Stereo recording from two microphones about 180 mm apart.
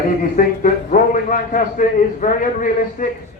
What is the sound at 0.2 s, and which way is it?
A man's voice, 45° left (ahead or behind).